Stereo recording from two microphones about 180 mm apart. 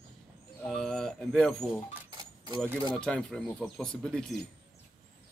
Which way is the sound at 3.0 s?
5° left (ahead or behind).